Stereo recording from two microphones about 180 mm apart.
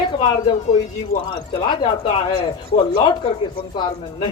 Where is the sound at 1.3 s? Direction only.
30° left (ahead or behind).